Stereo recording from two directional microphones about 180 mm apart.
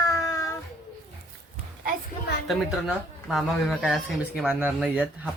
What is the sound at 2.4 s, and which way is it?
Speech, centre (ahead or behind).